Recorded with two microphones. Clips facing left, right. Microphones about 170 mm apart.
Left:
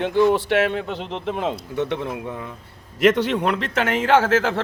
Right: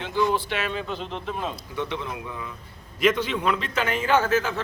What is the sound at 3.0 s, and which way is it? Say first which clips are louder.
A man's voice: left 5 dB; 75° left (ahead or behind).